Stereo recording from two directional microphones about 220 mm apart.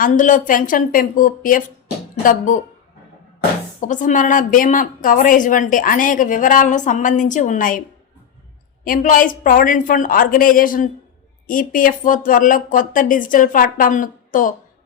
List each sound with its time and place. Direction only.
0.0 s a woman's voice: 35° left (ahead or behind)
3.8 s a woman's voice: 35° left (ahead or behind)
8.8 s a woman's voice: 40° left (ahead or behind)